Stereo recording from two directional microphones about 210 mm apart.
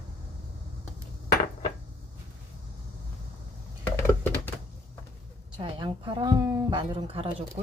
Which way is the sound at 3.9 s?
10° left (ahead or behind).